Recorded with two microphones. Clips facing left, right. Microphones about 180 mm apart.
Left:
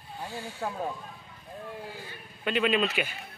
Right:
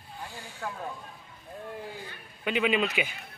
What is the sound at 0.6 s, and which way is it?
Speech, 35° left (ahead or behind).